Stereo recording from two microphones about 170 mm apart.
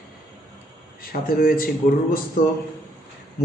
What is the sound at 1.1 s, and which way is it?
Speech, 55° left (ahead or behind).